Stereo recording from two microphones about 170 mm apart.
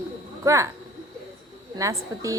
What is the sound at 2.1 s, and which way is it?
Speech, 20° right (ahead or behind).